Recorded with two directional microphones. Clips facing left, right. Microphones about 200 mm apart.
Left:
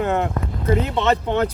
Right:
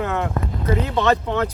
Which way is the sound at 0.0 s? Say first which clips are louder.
Left 2 dB; 25° left (ahead or behind).